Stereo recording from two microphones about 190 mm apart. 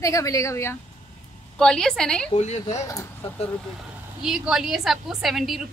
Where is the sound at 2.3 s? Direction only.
35° left (ahead or behind).